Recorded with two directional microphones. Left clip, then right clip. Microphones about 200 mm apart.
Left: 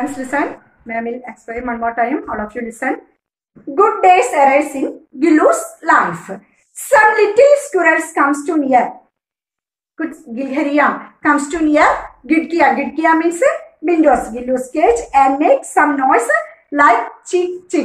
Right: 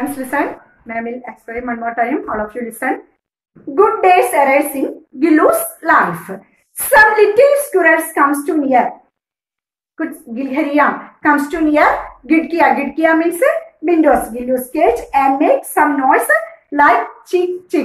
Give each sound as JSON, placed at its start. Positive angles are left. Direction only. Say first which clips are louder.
{"t": 0.0, "sound": "a woman's voice", "louder": "even", "side_deg": 0}
{"t": 9.9, "sound": "a woman's voice", "louder": "even", "side_deg": 0}